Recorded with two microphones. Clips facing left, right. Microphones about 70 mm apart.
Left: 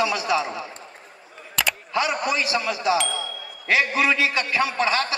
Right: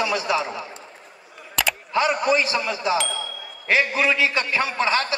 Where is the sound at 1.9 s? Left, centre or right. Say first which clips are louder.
Right 4 dB; right.